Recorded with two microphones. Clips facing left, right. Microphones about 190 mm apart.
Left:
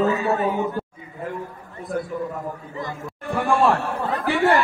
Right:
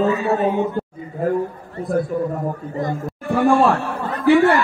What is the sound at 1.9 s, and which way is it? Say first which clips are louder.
A man's voice: right 6 dB; 45° right (ahead or behind).